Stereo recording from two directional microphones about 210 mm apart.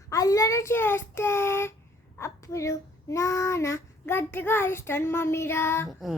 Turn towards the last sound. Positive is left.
turn(degrees=0)  # may be behind; listen again after turning